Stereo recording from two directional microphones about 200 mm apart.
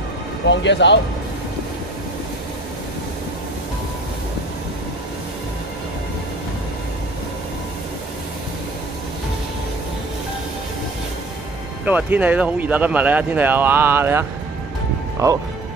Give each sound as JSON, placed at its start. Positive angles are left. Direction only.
{"t": 0.5, "sound": "speech", "side_deg": 60}
{"t": 11.8, "sound": "speech", "side_deg": -10}